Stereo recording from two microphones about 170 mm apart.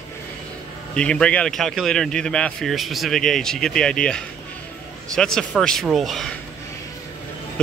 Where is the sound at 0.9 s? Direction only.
5° left (ahead or behind).